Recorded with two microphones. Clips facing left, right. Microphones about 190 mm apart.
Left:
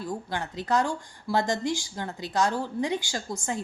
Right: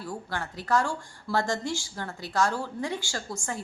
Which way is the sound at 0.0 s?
20° left (ahead or behind).